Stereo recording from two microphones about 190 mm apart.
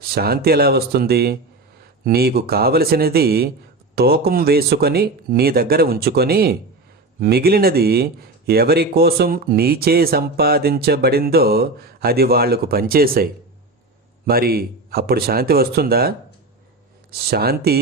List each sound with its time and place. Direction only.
0.1 s speech: 55° right (ahead or behind)
14.3 s speech: 50° right (ahead or behind)